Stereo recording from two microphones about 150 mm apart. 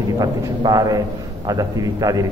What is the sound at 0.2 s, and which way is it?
A man's voice, 25° right (ahead or behind).